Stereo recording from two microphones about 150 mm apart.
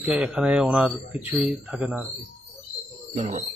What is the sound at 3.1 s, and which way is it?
Speech, 50° right (ahead or behind).